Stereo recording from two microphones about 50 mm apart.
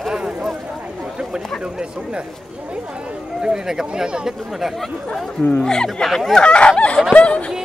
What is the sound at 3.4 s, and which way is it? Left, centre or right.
Speech, centre.